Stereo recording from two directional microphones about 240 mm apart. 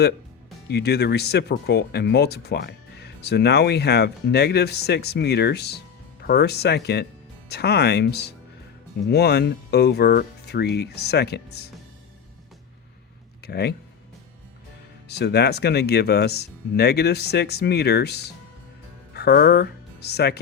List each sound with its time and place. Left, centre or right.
0.7 s speech: left
13.4 s speech: left
15.0 s speech: left